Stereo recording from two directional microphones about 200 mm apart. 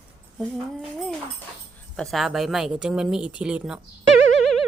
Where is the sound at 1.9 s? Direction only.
Centre (ahead or behind).